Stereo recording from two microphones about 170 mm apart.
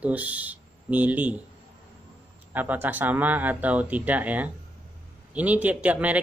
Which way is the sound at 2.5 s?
10° right (ahead or behind).